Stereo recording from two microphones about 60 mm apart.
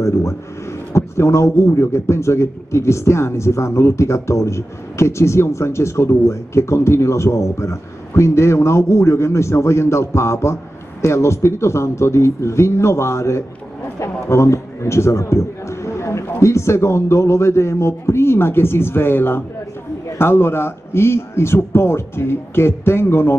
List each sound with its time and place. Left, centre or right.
0.0 s a man's voice: left